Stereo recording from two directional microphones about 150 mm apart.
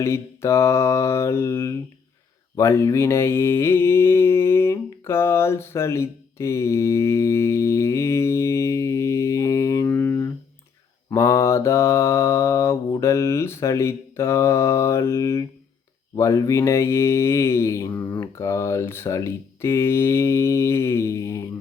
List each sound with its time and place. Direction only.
0.0 s speech: 20° left (ahead or behind)
2.6 s mantra: 20° left (ahead or behind)
16.1 s speech: 20° left (ahead or behind)